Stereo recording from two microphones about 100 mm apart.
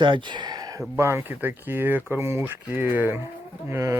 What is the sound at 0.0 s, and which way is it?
Speech, 50° right (ahead or behind).